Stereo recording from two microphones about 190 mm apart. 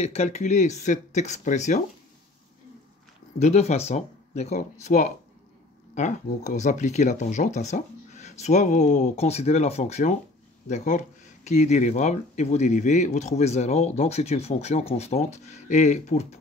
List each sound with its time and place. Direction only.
0.0 s speech: 35° left (ahead or behind)
3.3 s speech: 35° left (ahead or behind)